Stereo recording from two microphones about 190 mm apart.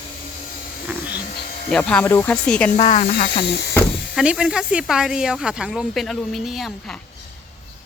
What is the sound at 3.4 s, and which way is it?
Speech, 60° left (ahead or behind).